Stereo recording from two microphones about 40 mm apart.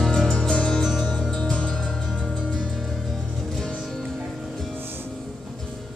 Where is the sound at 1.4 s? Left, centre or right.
Left.